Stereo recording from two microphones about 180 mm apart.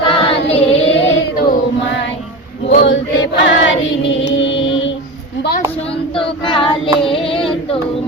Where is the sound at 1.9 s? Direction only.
90° left.